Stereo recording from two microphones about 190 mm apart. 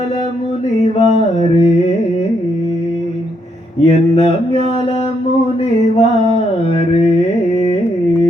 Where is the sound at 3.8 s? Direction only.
35° left (ahead or behind).